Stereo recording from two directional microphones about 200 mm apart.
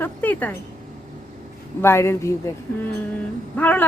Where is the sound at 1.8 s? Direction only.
10° left (ahead or behind).